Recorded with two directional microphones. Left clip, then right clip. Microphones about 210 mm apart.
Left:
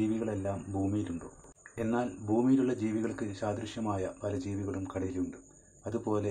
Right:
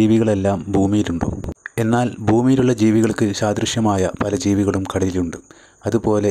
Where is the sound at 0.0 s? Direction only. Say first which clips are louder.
Right 17 dB; 40° right (ahead or behind).